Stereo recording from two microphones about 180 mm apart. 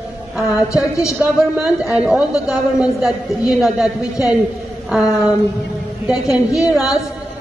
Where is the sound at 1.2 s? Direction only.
5° right (ahead or behind).